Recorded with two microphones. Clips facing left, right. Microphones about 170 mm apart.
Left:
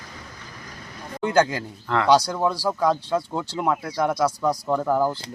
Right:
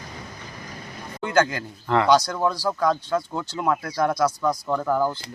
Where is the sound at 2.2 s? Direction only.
10° left (ahead or behind).